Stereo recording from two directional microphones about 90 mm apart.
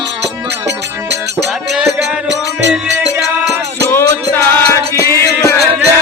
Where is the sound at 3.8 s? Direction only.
30° left (ahead or behind).